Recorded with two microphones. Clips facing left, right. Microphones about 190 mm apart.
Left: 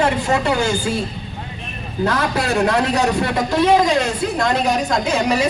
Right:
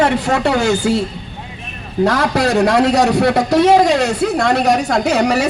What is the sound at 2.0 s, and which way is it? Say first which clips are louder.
A woman's voice: right 4 dB; 80° right.